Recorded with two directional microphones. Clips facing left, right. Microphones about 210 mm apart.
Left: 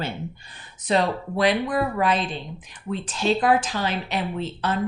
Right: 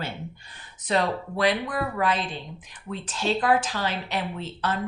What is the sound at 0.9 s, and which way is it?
Speech, 20° left (ahead or behind).